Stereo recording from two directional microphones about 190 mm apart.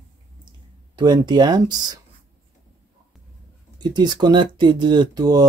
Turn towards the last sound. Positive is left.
turn(degrees=-20)  # may be behind; listen again after turning